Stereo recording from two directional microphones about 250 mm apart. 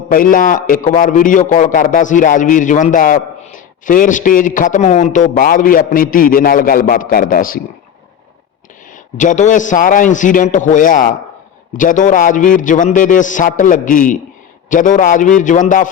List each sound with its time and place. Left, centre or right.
0.1 s a man's voice: left
8.9 s a man's voice: left